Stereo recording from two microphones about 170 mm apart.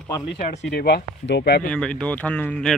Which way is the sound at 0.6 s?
70° left (ahead or behind).